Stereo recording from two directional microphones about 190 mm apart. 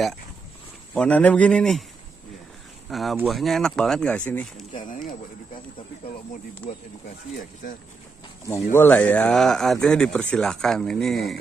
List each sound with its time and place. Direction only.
0.9 s a man's voice: 5° left (ahead or behind)
2.9 s speech: centre (ahead or behind)
4.8 s speech: 45° left (ahead or behind)
8.7 s speech: 10° left (ahead or behind)